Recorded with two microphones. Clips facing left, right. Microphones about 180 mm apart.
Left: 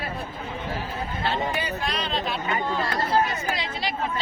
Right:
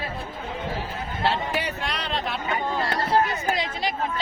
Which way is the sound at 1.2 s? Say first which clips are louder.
Right 2 dB; 70° right (ahead or behind).